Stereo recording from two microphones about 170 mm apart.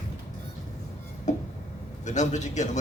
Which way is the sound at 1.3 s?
45° left (ahead or behind).